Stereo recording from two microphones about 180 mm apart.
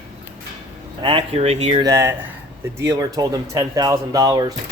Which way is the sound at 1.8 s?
15° right (ahead or behind).